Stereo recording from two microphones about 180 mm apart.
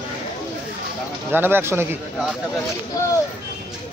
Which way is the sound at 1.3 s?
10° right (ahead or behind).